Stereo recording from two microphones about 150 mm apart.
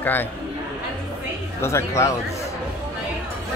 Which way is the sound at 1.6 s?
20° left (ahead or behind).